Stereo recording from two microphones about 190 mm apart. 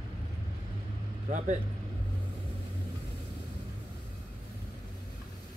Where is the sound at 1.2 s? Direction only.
40° right (ahead or behind).